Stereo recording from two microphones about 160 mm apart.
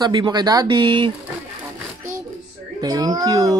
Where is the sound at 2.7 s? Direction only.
25° right (ahead or behind).